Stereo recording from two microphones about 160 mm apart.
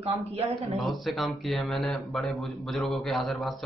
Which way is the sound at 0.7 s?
Centre (ahead or behind).